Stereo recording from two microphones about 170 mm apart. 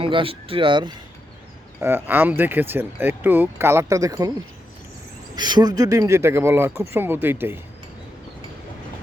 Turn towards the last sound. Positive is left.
turn(degrees=-15)  # may be behind; listen again after turning